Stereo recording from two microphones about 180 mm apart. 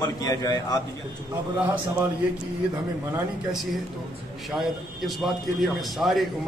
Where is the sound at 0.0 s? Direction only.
20° left (ahead or behind).